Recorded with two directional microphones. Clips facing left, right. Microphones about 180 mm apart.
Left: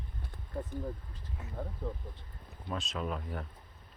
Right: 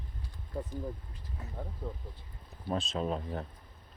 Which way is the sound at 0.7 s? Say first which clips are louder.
Left 1 dB; 55° left (ahead or behind).